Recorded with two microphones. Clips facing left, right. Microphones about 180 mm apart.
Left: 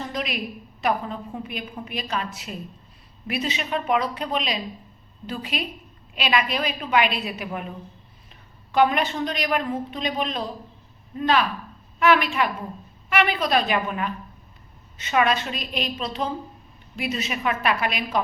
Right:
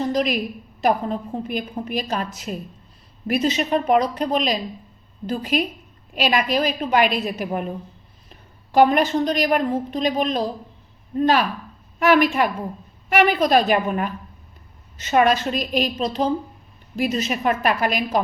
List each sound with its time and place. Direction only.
0.0 s a sound: 40° right (ahead or behind)
0.8 s a woman's voice: 40° right (ahead or behind)
8.7 s a woman's voice: 40° right (ahead or behind)